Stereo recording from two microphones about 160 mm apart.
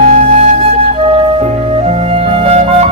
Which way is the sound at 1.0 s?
40° right (ahead or behind).